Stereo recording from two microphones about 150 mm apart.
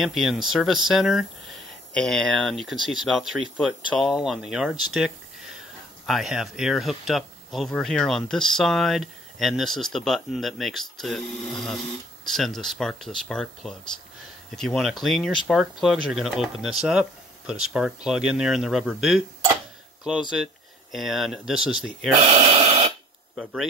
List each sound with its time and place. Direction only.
0.0 s speech: centre (ahead or behind)
20.9 s speech: centre (ahead or behind)
22.2 s gasp: 45° right (ahead or behind)
23.3 s speech: centre (ahead or behind)